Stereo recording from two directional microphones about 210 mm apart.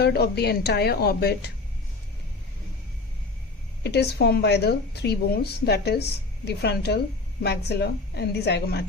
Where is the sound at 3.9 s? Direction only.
50° left (ahead or behind).